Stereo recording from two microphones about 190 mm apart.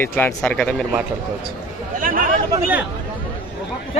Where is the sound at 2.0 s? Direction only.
45° right (ahead or behind).